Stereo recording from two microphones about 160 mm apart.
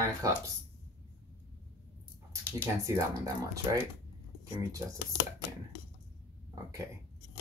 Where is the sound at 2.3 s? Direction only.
20° right (ahead or behind).